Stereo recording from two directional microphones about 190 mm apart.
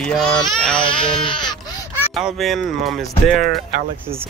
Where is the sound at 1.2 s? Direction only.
25° left (ahead or behind).